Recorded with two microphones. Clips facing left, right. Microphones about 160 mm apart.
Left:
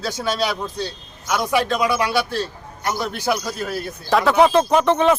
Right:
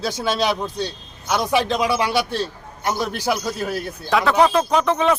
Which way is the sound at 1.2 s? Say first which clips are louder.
Even; 25° right (ahead or behind).